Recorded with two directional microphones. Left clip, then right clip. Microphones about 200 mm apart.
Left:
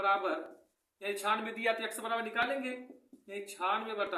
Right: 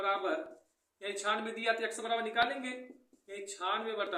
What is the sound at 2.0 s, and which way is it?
Speech, 15° left (ahead or behind).